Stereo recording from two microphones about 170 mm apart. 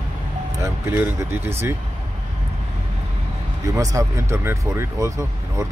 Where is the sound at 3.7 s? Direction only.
20° right (ahead or behind).